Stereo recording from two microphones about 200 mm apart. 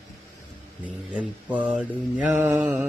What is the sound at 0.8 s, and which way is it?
Mantra, 5° right (ahead or behind).